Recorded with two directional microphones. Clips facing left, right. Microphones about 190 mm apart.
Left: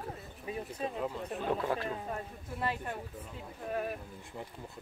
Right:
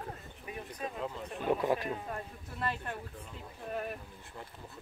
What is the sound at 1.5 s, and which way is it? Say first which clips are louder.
Speech: right 3 dB; 15° right (ahead or behind).